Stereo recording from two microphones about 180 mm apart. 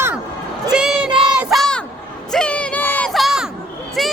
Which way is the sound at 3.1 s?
Centre (ahead or behind).